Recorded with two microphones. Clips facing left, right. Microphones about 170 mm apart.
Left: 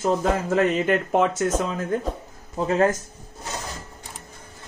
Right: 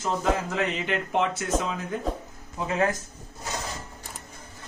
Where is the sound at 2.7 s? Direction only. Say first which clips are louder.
Left 5 dB; 40° left (ahead or behind).